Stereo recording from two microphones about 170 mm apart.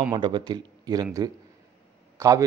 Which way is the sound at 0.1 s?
25° right (ahead or behind).